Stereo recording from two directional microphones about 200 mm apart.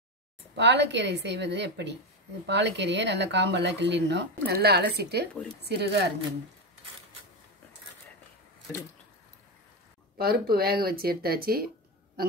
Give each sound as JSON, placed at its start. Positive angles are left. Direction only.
{"t": 0.6, "sound": "speech", "side_deg": -60}
{"t": 10.1, "sound": "speech", "side_deg": -50}